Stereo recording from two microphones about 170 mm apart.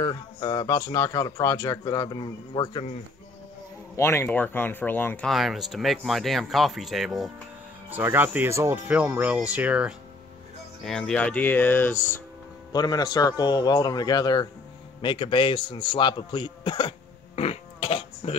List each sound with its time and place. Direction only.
0.0 s speech: 25° left (ahead or behind)
3.9 s speech: 15° left (ahead or behind); by 7.2 s centre (ahead or behind)
7.9 s speech: 10° right (ahead or behind)
10.8 s speech: 5° left (ahead or behind)
12.7 s speech: 25° left (ahead or behind)
17.4 s a sound: 35° left (ahead or behind)